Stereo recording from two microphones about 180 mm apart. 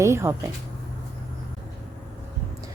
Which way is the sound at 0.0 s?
15° right (ahead or behind).